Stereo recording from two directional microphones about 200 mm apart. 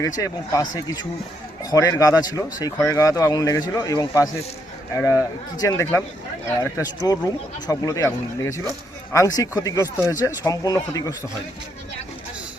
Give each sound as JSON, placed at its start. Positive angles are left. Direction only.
{"t": 0.0, "sound": "speech", "side_deg": 15}